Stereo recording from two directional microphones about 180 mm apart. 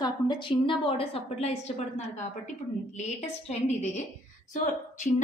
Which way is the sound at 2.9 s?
40° left (ahead or behind).